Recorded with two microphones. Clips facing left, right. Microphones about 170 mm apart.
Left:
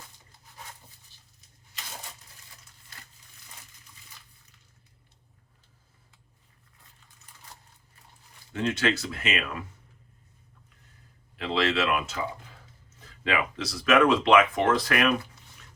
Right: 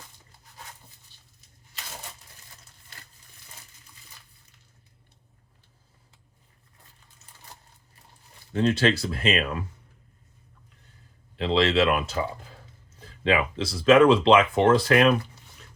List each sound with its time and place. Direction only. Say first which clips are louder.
8.5 s speech: right 5 dB; 35° right (ahead or behind)
11.3 s speech: right 5 dB; 30° right (ahead or behind)
13.2 s speech: right 5 dB; 25° right (ahead or behind)